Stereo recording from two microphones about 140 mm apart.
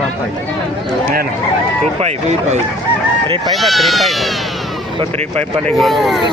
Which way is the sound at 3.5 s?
Centre (ahead or behind).